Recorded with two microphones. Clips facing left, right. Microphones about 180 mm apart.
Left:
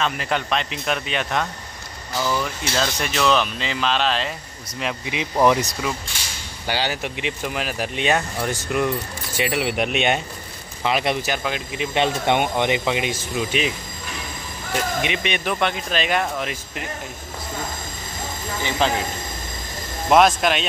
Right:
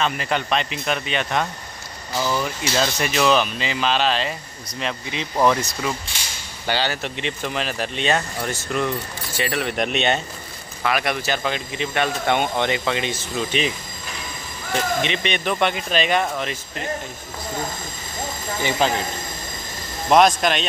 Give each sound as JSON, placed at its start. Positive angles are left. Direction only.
{"t": 0.0, "sound": "speech", "side_deg": 0}
{"t": 4.7, "sound": "speech", "side_deg": 10}
{"t": 10.8, "sound": "speech", "side_deg": 20}
{"t": 11.9, "sound": "speech", "side_deg": 20}
{"t": 18.8, "sound": "speech", "side_deg": -5}
{"t": 20.1, "sound": "speech", "side_deg": 5}